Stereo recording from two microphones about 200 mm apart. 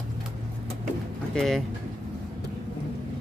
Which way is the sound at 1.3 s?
Centre (ahead or behind).